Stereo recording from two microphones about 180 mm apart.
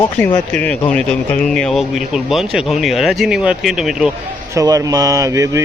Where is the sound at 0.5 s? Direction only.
5° left (ahead or behind).